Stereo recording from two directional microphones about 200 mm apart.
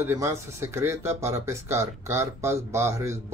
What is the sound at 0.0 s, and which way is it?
A man's voice, 15° right (ahead or behind).